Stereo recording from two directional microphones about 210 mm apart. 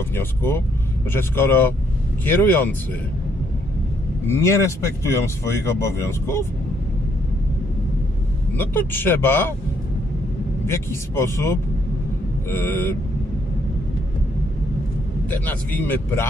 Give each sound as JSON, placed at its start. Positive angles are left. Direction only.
{"t": 0.1, "sound": "speech", "side_deg": 10}
{"t": 4.3, "sound": "speech", "side_deg": 15}
{"t": 8.5, "sound": "speech", "side_deg": 10}
{"t": 10.7, "sound": "speech", "side_deg": 10}
{"t": 15.3, "sound": "speech", "side_deg": 10}